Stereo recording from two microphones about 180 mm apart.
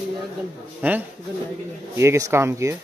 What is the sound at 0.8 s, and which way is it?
Speech, 10° right (ahead or behind).